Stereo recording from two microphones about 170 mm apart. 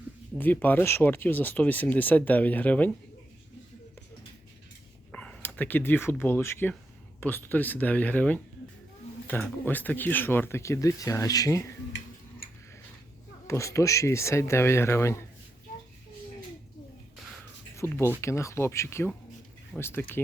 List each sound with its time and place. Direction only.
0.3 s speech: 10° left (ahead or behind)
5.1 s speech: 10° left (ahead or behind)
9.6 s speech: 10° left (ahead or behind)
13.5 s speech: 15° left (ahead or behind)
17.7 s speech: 15° left (ahead or behind)